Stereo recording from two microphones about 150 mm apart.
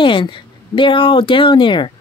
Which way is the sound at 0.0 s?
35° left (ahead or behind).